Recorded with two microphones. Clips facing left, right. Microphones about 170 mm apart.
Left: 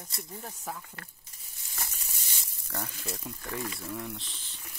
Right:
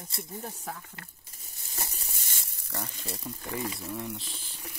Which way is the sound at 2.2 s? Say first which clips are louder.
Right 1 dB; 50° right (ahead or behind).